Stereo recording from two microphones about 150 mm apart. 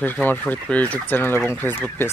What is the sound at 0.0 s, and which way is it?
Fowl, 10° left (ahead or behind).